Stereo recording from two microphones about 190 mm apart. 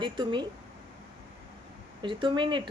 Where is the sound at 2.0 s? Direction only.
25° right (ahead or behind).